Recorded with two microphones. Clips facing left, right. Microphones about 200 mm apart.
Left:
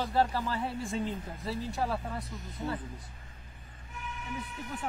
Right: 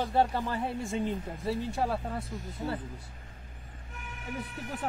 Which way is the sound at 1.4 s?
50° right (ahead or behind).